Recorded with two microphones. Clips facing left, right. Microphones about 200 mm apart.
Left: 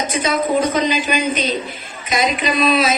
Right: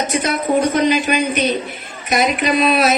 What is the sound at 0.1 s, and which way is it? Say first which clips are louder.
A woman's voice: left 1 dB; 65° right (ahead or behind).